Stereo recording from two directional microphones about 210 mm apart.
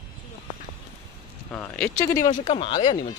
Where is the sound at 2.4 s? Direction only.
25° left (ahead or behind).